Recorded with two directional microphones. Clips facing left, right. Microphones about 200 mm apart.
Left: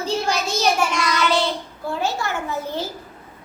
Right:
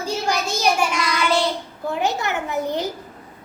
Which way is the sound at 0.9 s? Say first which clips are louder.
Left 1 dB; 5° right (ahead or behind).